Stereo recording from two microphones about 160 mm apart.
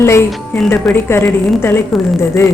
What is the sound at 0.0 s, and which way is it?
A woman's voice, 15° left (ahead or behind).